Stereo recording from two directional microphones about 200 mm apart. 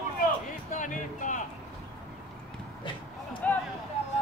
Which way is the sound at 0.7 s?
40° left (ahead or behind).